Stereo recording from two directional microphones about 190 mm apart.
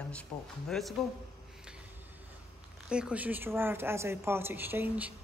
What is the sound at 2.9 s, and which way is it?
Speech, 5° right (ahead or behind).